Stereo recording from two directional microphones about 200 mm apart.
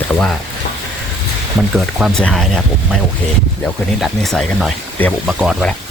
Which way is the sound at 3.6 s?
Centre (ahead or behind).